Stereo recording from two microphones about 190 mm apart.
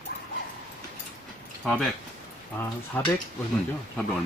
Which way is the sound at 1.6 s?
5° left (ahead or behind).